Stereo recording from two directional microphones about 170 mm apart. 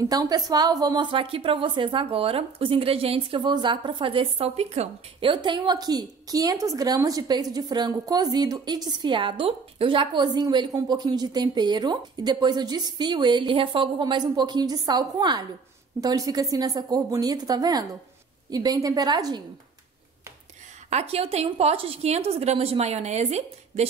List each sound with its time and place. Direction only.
0.0 s a woman's voice: 20° right (ahead or behind)
20.9 s a woman's voice: 35° right (ahead or behind)